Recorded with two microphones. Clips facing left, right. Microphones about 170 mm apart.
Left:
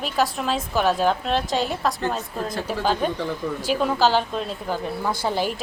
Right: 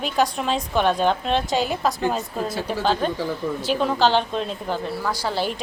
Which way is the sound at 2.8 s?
5° left (ahead or behind).